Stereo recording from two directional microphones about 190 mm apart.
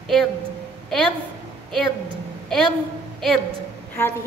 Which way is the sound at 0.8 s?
Centre (ahead or behind).